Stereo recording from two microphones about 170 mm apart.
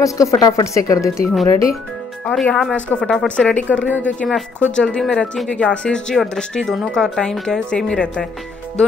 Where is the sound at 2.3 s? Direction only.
5° left (ahead or behind).